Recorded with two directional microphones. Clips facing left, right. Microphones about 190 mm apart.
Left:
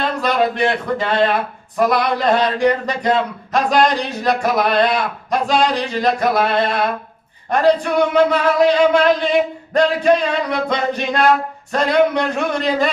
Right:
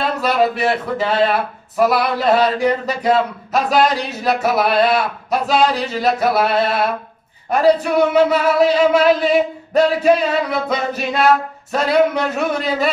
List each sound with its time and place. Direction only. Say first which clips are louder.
0.0 s speech: right 1 dB; 5° right (ahead or behind)